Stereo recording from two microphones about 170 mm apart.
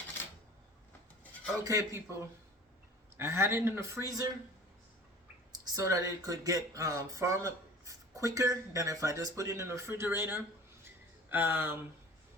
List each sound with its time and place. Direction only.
1.6 s speech: 15° right (ahead or behind)
3.2 s speech: 15° right (ahead or behind)
5.7 s speech: 20° right (ahead or behind)